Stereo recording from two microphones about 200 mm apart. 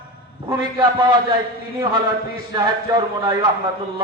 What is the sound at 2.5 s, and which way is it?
Speech, 20° right (ahead or behind).